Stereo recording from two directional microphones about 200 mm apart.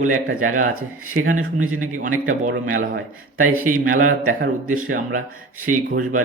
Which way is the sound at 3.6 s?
45° right (ahead or behind).